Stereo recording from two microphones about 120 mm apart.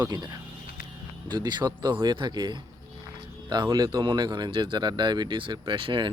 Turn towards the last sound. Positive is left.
turn(degrees=-45)  # may be behind; listen again after turning